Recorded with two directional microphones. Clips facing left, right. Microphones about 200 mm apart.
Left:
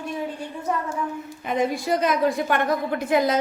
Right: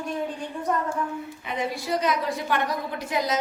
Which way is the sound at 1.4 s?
50° left (ahead or behind).